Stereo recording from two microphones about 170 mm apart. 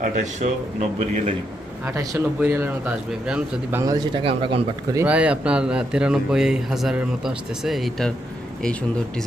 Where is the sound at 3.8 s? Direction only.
20° right (ahead or behind).